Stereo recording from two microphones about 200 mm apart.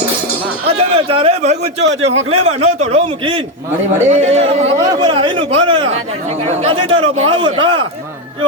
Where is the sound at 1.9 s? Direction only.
65° right (ahead or behind).